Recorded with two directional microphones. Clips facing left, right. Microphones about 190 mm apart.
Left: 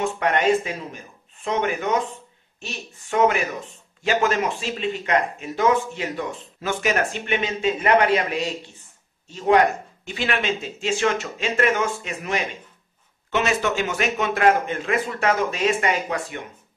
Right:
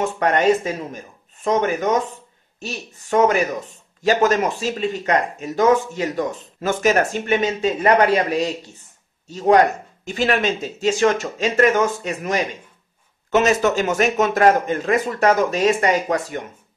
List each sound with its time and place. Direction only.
0.0 s speech: 40° right (ahead or behind)
10.0 s speech: 45° right (ahead or behind)